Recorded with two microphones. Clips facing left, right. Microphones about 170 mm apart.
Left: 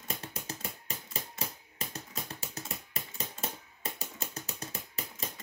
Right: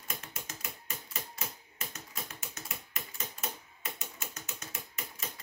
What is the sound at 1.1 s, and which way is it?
Typewriter, 35° left (ahead or behind).